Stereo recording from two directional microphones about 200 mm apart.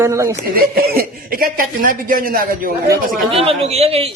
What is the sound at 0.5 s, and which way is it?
Speech, 50° right (ahead or behind).